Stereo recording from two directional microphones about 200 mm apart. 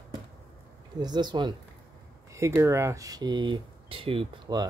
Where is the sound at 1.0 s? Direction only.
20° right (ahead or behind).